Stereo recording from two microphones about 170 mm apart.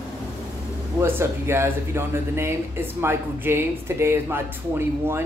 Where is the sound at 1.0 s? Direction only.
15° right (ahead or behind).